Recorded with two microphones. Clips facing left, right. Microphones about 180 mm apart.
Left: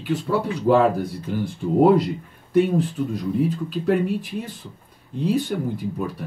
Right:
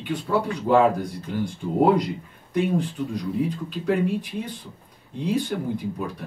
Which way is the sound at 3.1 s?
Centre (ahead or behind).